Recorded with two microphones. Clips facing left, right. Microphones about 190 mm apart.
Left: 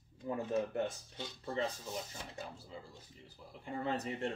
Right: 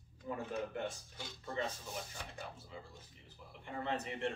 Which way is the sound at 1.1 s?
30° left (ahead or behind).